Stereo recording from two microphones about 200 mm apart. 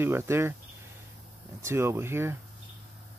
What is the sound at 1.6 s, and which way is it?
Speech, 15° right (ahead or behind).